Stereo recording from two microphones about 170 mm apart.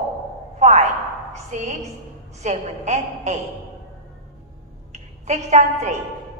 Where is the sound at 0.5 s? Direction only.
45° right (ahead or behind).